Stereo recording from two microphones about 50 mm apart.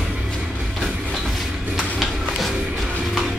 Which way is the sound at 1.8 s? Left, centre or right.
Centre.